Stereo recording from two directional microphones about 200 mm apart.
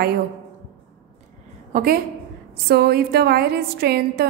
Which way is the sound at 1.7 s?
45° right (ahead or behind).